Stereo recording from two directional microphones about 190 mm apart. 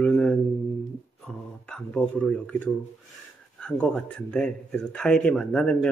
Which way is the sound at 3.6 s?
5° left (ahead or behind).